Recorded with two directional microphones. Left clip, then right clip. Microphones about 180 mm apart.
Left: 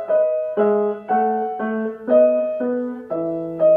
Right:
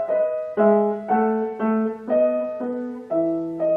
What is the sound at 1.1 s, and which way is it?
Music, 40° left (ahead or behind).